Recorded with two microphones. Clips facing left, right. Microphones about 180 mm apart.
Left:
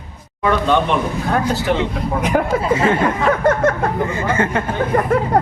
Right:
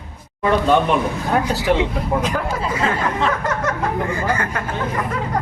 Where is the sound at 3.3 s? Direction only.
55° left (ahead or behind).